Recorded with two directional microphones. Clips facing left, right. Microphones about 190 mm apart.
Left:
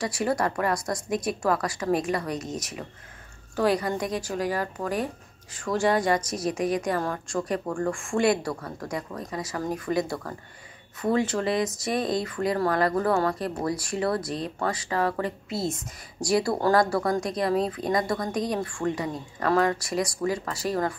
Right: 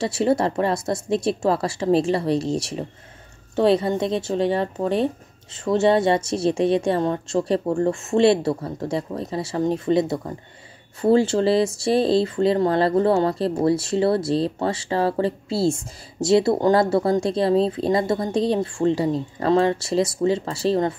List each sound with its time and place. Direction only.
0.0 s speech: 25° right (ahead or behind)